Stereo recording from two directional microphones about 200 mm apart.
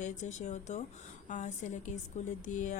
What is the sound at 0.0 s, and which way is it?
Speech, 40° left (ahead or behind).